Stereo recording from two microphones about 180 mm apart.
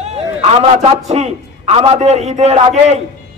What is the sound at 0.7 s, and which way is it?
A man's voice, 40° right (ahead or behind).